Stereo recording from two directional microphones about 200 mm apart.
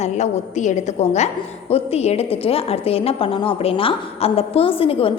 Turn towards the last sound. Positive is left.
turn(degrees=25)  # may be behind; listen again after turning